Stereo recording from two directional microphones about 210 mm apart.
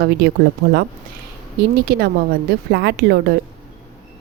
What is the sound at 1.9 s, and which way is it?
Speech, 50° right (ahead or behind).